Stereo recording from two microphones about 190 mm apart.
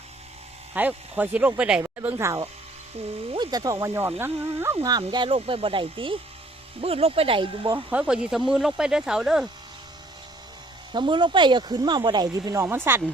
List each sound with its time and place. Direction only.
0.7 s speech: 10° right (ahead or behind); by 7.8 s 25° right (ahead or behind)
7.9 s speech: 5° right (ahead or behind)
10.9 s speech: 25° right (ahead or behind)